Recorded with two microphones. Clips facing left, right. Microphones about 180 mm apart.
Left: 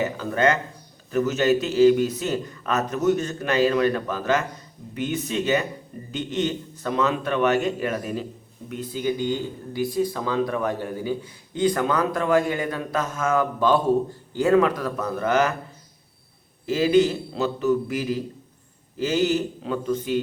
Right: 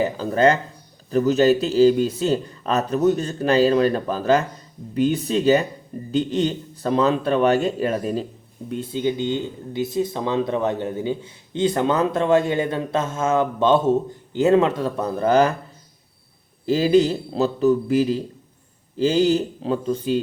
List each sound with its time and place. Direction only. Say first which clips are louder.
0.0 s a man's voice: right 4 dB; 35° right (ahead or behind)
16.6 s a man's voice: right 2 dB; 35° right (ahead or behind)